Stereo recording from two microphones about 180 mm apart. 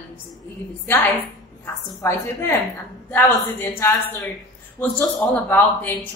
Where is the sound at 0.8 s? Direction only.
10° left (ahead or behind).